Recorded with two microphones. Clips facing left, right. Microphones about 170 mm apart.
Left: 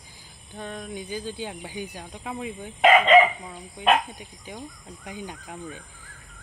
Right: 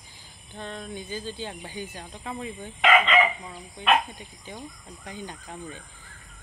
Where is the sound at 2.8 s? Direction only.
35° left (ahead or behind).